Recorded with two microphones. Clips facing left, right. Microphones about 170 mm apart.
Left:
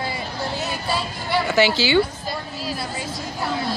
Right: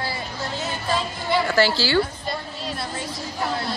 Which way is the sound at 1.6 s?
65° left (ahead or behind).